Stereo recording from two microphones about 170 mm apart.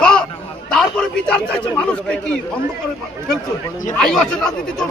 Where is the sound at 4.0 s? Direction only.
Centre (ahead or behind).